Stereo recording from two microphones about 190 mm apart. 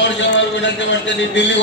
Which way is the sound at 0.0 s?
70° left (ahead or behind).